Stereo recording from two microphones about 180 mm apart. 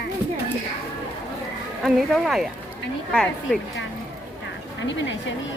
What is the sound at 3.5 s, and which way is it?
Speech, 5° left (ahead or behind).